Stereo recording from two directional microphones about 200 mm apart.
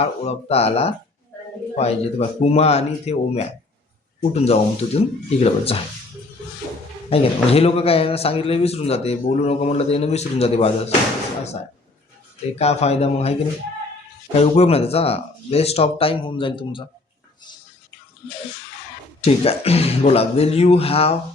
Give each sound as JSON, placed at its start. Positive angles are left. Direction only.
{"t": 0.0, "sound": "speech", "side_deg": 30}
{"t": 7.1, "sound": "speech", "side_deg": 30}
{"t": 12.5, "sound": "speech", "side_deg": 30}
{"t": 14.3, "sound": "speech", "side_deg": 30}
{"t": 19.2, "sound": "speech", "side_deg": 30}